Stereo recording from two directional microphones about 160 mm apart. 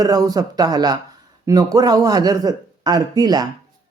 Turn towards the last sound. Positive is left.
turn(degrees=-25)  # may be behind; listen again after turning